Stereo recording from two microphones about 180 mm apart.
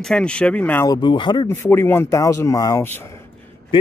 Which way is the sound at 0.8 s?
25° left (ahead or behind).